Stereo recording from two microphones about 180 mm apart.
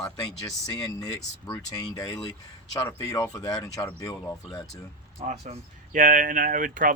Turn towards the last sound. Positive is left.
turn(degrees=-50)  # may be behind; listen again after turning